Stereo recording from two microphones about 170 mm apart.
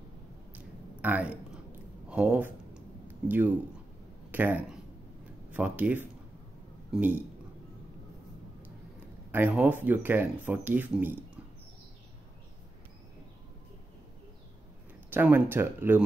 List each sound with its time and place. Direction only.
0.6 s a sound: 10° right (ahead or behind)
3.3 s speech: 10° right (ahead or behind)
9.3 s speech: 10° right (ahead or behind)
15.0 s speech: 10° right (ahead or behind)